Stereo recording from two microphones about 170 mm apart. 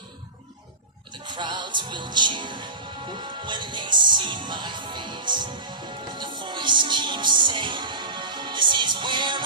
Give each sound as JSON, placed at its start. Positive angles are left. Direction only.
{"t": 1.1, "sound": "music", "side_deg": -25}